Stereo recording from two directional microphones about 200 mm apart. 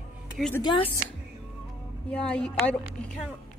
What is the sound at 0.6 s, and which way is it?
Speech, 25° left (ahead or behind).